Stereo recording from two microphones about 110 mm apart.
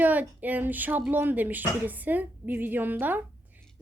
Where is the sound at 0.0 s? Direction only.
15° right (ahead or behind).